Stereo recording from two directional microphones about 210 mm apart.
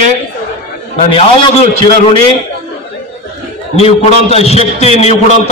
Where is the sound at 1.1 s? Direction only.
25° left (ahead or behind).